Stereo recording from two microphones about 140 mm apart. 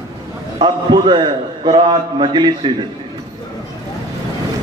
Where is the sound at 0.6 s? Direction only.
35° right (ahead or behind).